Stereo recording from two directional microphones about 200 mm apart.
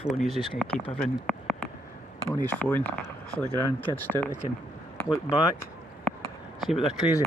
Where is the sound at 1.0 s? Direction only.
5° left (ahead or behind).